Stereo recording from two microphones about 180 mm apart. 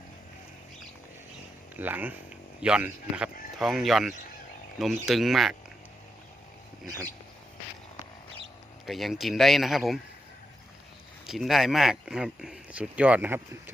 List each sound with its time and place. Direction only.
1.7 s speech: 10° right (ahead or behind)
8.9 s speech: centre (ahead or behind)
11.3 s speech: centre (ahead or behind)